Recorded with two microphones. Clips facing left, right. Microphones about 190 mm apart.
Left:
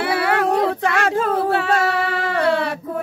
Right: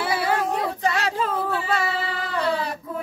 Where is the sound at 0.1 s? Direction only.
65° left (ahead or behind).